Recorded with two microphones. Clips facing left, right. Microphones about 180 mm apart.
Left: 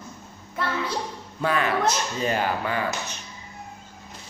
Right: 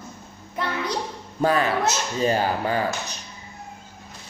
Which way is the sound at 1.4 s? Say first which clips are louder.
Right 2 dB; 35° right (ahead or behind).